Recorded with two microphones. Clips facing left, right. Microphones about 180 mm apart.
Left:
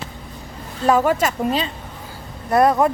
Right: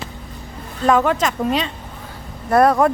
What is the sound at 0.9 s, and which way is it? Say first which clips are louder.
Speech: even; 10° left (ahead or behind).